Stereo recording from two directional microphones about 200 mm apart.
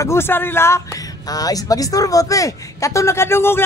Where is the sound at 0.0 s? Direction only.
10° left (ahead or behind).